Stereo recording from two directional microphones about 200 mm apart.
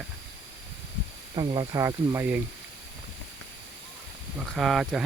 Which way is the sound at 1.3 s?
20° right (ahead or behind).